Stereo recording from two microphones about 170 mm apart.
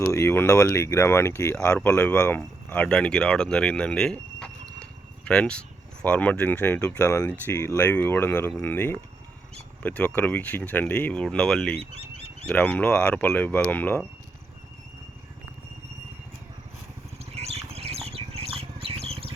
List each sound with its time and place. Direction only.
0.0 s speech: 15° left (ahead or behind)
11.8 s bird: 40° right (ahead or behind)
12.5 s speech: 5° left (ahead or behind)
17.3 s a sound: 40° right (ahead or behind)